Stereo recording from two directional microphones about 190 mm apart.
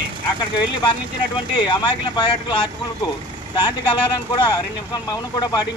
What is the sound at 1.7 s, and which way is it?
Speech, 25° left (ahead or behind).